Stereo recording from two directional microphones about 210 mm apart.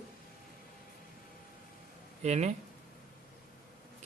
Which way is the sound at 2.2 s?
35° right (ahead or behind).